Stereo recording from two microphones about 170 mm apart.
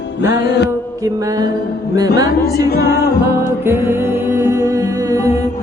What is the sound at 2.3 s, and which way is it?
Music, 65° left (ahead or behind).